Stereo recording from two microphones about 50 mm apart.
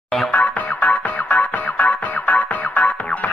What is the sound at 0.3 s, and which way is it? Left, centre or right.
Music, left.